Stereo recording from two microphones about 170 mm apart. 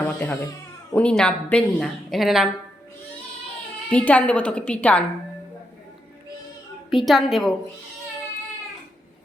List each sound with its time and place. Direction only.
0.0 s cat: 10° left (ahead or behind)
0.9 s speech: 5° left (ahead or behind)
3.8 s a woman's voice: 10° left (ahead or behind)
6.9 s speech: centre (ahead or behind)